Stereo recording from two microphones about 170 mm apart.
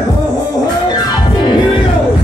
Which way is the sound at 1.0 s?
25° left (ahead or behind).